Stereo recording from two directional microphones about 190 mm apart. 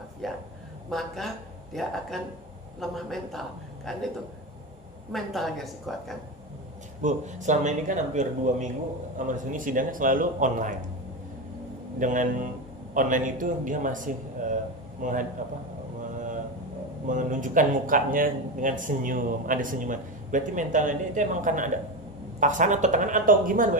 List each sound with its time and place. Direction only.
0.2 s a woman's voice: centre (ahead or behind)
5.1 s a woman's voice: centre (ahead or behind)
7.0 s a man's voice: 40° right (ahead or behind)
11.9 s a man's voice: 45° right (ahead or behind)
17.1 s a man's voice: 40° right (ahead or behind)